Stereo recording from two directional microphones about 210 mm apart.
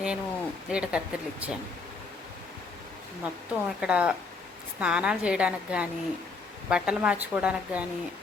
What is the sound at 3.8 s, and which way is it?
Speech, 5° right (ahead or behind).